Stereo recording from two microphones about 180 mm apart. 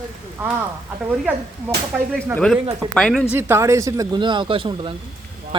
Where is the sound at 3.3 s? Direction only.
15° right (ahead or behind).